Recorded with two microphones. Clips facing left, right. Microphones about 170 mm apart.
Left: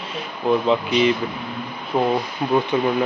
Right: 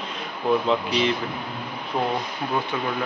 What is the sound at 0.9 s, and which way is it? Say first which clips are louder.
Speech: left 7 dB; 35° right (ahead or behind).